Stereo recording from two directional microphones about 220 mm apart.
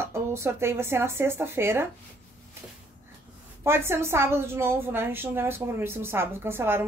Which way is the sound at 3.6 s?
10° right (ahead or behind).